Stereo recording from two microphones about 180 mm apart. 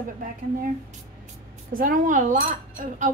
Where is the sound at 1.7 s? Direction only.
50° right (ahead or behind).